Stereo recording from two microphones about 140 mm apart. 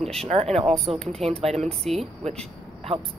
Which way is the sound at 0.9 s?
45° right (ahead or behind).